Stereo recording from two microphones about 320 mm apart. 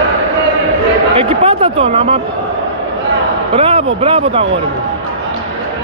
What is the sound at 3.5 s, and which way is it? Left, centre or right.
A man's voice, centre.